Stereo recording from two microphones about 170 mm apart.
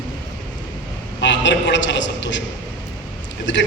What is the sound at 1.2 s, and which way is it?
A man's voice, 90° left.